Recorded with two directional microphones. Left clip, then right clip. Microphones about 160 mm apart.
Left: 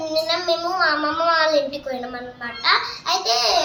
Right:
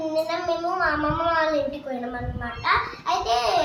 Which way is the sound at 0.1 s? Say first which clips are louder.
Left 5 dB; 5° left (ahead or behind).